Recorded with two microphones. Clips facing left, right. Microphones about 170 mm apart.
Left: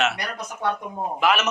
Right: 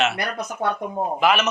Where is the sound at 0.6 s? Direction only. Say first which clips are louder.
Right 1 dB; 45° right (ahead or behind).